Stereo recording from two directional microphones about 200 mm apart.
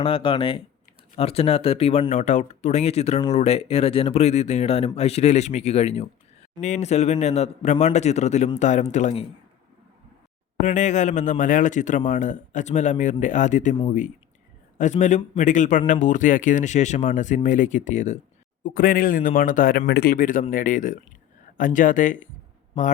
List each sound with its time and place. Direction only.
0.0 s a man's voice: 25° left (ahead or behind)
10.6 s a man's voice: 35° left (ahead or behind)